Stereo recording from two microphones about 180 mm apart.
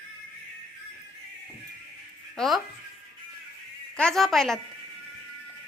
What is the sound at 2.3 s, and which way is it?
Speech, centre (ahead or behind).